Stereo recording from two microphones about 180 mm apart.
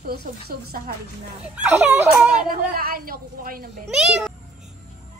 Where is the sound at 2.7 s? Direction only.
55° right (ahead or behind).